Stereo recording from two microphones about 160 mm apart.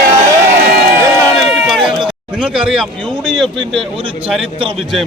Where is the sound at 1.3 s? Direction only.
Centre (ahead or behind).